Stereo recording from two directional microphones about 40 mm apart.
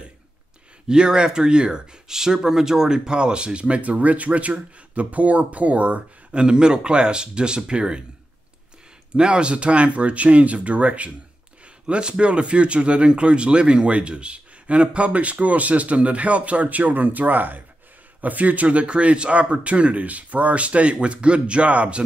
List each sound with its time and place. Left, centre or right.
0.8 s speech: right
9.1 s speech: right
11.8 s speech: right